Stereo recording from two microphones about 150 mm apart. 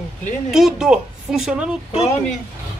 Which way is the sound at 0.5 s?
Centre (ahead or behind).